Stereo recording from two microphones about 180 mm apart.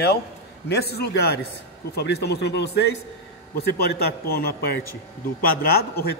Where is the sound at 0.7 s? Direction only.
65° left (ahead or behind).